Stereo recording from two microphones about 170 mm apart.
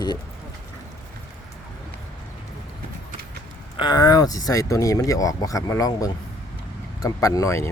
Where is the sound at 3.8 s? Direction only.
25° left (ahead or behind).